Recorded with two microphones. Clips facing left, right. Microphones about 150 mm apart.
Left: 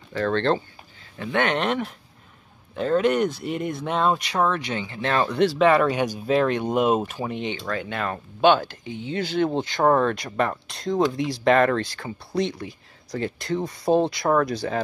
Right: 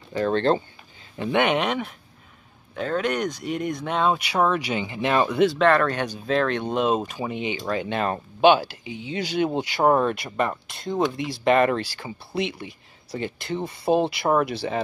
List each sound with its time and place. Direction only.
0.1 s speech: 15° right (ahead or behind)
5.4 s speech: 5° left (ahead or behind)
7.6 s speech: 20° right (ahead or behind)
8.5 s speech: 10° right (ahead or behind)